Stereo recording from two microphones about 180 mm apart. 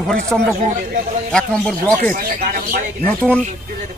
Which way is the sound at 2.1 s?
55° right (ahead or behind).